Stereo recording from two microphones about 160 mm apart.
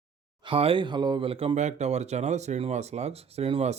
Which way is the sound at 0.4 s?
35° right (ahead or behind).